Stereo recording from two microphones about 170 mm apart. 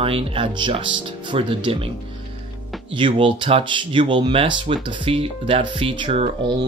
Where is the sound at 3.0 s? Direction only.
30° right (ahead or behind).